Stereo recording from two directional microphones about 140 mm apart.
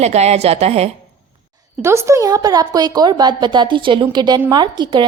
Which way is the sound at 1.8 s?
20° right (ahead or behind).